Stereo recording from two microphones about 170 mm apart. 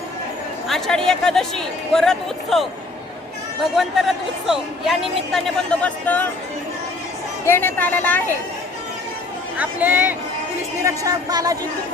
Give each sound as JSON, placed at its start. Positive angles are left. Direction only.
{"t": 0.7, "sound": "speech", "side_deg": 5}
{"t": 7.4, "sound": "speech", "side_deg": 10}
{"t": 9.6, "sound": "speech", "side_deg": -10}
{"t": 10.8, "sound": "speech", "side_deg": -20}